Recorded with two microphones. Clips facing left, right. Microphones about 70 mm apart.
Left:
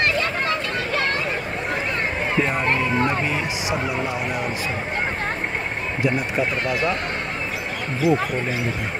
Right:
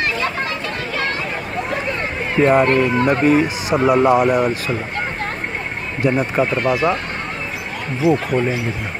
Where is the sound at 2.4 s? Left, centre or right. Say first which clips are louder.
Right 12 dB; right.